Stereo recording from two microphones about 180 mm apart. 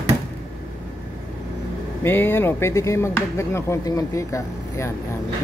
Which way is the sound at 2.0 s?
10° left (ahead or behind).